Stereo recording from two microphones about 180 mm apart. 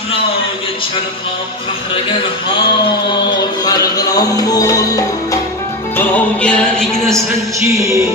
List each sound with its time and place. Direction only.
3.1 s music: 25° left (ahead or behind)
5.9 s music: 5° left (ahead or behind)
7.6 s music: 15° right (ahead or behind)